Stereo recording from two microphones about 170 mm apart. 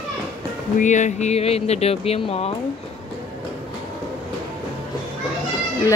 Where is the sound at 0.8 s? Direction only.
45° left (ahead or behind).